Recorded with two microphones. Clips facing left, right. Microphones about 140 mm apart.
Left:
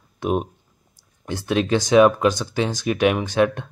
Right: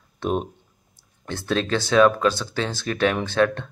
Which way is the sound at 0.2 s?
10° left (ahead or behind).